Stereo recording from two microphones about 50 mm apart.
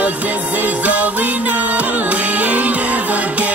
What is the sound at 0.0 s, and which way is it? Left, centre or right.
Music, right.